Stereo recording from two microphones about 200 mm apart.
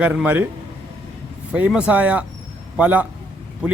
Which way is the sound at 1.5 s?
5° right (ahead or behind).